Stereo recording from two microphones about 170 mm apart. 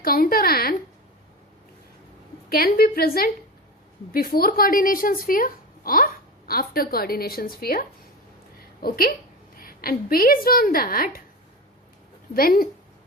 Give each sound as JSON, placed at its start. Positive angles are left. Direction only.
{"t": 0.0, "sound": "a sound", "side_deg": 60}
{"t": 2.5, "sound": "speech", "side_deg": 60}
{"t": 12.3, "sound": "speech", "side_deg": 60}